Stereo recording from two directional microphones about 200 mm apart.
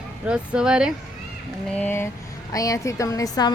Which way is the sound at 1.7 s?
10° left (ahead or behind).